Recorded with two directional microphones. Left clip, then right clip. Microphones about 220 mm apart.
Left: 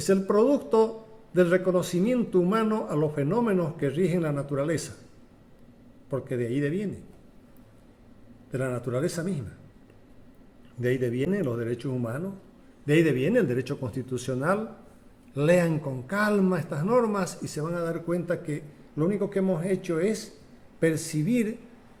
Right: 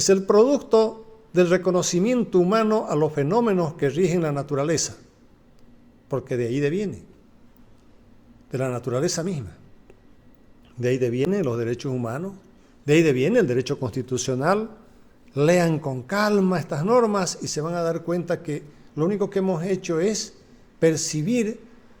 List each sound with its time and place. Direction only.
0.0 s speech: 35° right (ahead or behind)
6.1 s speech: 40° right (ahead or behind)
8.5 s speech: 40° right (ahead or behind)
10.8 s speech: 35° right (ahead or behind)